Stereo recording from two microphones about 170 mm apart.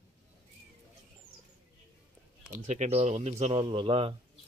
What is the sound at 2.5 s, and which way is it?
A man's voice, 45° right (ahead or behind).